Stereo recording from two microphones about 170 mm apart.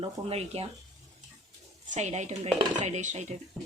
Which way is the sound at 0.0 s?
35° right (ahead or behind).